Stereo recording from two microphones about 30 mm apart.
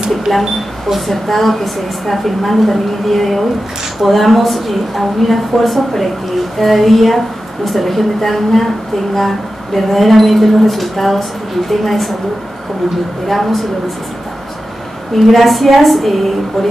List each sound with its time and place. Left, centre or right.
0.3 s a woman's voice: centre
9.8 s a woman's voice: centre
13.3 s a woman's voice: centre
15.1 s a woman's voice: centre